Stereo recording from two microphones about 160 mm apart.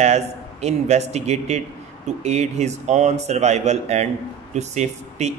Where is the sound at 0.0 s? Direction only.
40° right (ahead or behind).